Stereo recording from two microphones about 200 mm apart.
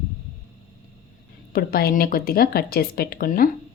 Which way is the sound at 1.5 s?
50° left (ahead or behind).